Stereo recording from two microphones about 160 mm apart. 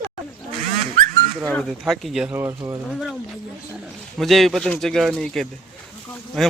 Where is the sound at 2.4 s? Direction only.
20° right (ahead or behind).